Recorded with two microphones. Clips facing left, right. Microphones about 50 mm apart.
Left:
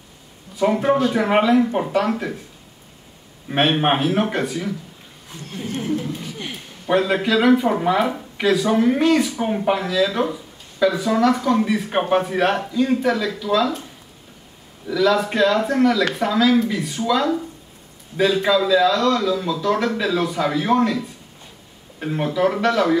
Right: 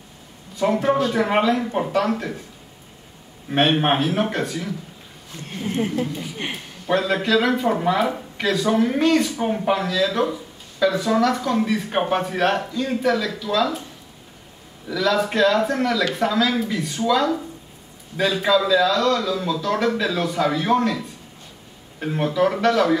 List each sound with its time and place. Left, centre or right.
0.6 s speech: centre
3.4 s speech: centre
5.5 s speech: right
6.9 s speech: centre
14.9 s speech: centre
22.0 s speech: centre